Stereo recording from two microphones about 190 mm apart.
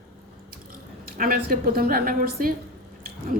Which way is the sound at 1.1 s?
50° right (ahead or behind).